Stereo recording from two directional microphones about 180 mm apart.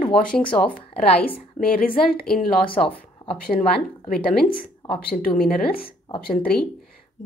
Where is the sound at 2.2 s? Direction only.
Centre (ahead or behind).